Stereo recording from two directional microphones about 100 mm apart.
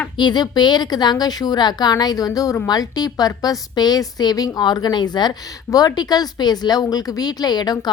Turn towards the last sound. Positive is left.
turn(degrees=40)  # may be behind; listen again after turning